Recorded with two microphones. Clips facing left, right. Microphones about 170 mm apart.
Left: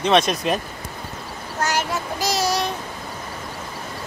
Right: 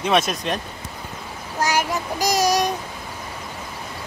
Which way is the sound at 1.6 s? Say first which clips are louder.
Right 2 dB; 15° right (ahead or behind).